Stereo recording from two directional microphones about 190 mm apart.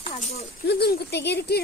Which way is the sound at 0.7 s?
55° left (ahead or behind).